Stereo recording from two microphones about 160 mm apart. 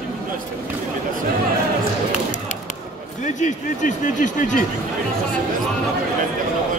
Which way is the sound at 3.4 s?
50° left (ahead or behind).